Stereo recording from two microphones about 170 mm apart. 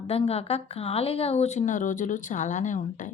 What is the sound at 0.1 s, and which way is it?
A woman's voice, 35° left (ahead or behind).